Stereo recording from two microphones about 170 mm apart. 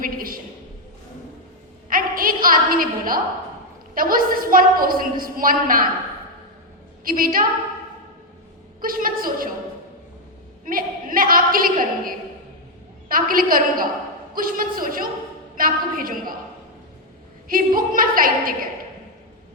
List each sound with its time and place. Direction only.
0.0 s a sound: 55° right (ahead or behind)
1.9 s a woman's voice: 55° right (ahead or behind)
7.0 s a woman's voice: 55° right (ahead or behind)
8.8 s a woman's voice: 55° right (ahead or behind)
10.7 s a woman's voice: 55° right (ahead or behind)
17.5 s a woman's voice: 55° right (ahead or behind)